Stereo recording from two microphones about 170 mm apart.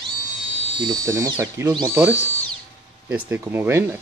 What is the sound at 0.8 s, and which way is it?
Speech, 20° right (ahead or behind).